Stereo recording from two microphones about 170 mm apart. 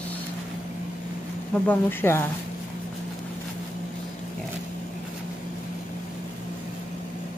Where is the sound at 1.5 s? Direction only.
10° left (ahead or behind).